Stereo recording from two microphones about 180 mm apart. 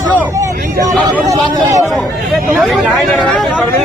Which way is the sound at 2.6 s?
Centre (ahead or behind).